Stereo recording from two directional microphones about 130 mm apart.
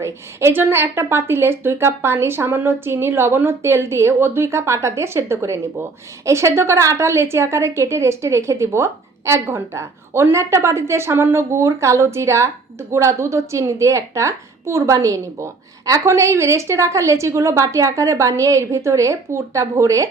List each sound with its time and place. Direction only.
0.0 s a woman's voice: 20° right (ahead or behind)